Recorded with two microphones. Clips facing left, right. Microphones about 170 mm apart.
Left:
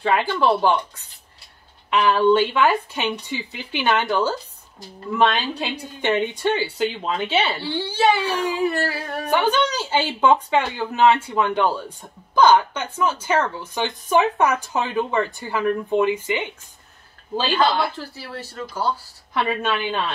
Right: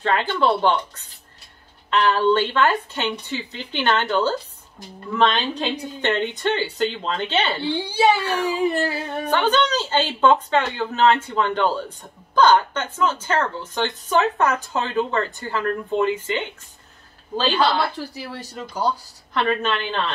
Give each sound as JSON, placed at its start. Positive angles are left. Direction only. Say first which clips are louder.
{"t": 0.0, "sound": "speech", "louder": "left 1 dB", "side_deg": 10}
{"t": 7.6, "sound": "speech", "louder": "right 1 dB", "side_deg": -15}
{"t": 8.2, "sound": "speech", "louder": "even", "side_deg": 10}
{"t": 8.6, "sound": "speech", "louder": "right 1 dB", "side_deg": -20}
{"t": 9.3, "sound": "speech", "louder": "even", "side_deg": 10}
{"t": 17.9, "sound": "speech", "louder": "right 2 dB", "side_deg": -15}
{"t": 19.3, "sound": "speech", "louder": "right 1 dB", "side_deg": 10}